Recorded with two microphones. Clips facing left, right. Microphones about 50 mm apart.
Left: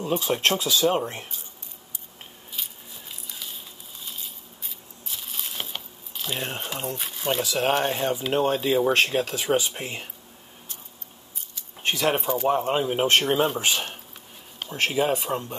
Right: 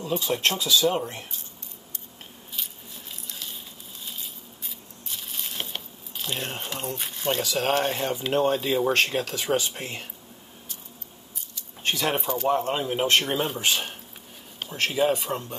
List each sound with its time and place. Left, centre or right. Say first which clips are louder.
0.0 s speech: left 2 dB; left
3.3 s a sound: even; centre
7.7 s speech: left 1 dB; centre
11.8 s a sound: left 2 dB; centre
12.3 s speech: left 1 dB; centre
13.0 s speech: left 1 dB; left
13.4 s speech: left 3 dB; centre